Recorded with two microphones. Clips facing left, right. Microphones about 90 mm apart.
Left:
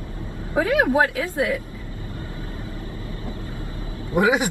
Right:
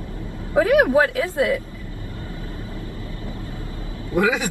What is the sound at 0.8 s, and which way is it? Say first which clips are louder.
Speech: right 2 dB; 25° left (ahead or behind).